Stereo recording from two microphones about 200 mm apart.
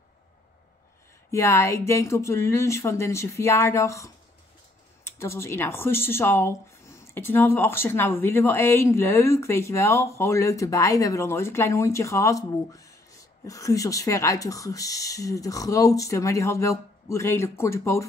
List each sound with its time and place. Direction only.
1.3 s speech: 15° left (ahead or behind)